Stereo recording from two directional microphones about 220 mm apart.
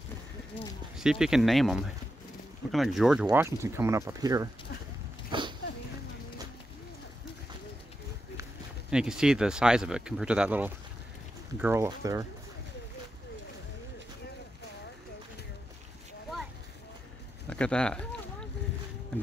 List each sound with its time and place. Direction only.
0.9 s speech: centre (ahead or behind)
5.3 s a sound: 20° right (ahead or behind)
8.9 s speech: 5° right (ahead or behind)
17.5 s speech: 5° left (ahead or behind)